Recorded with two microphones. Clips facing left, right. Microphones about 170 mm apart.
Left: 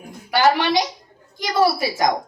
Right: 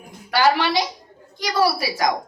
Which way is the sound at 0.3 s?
20° left (ahead or behind).